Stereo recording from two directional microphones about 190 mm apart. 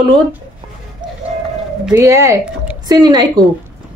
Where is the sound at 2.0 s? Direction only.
15° right (ahead or behind).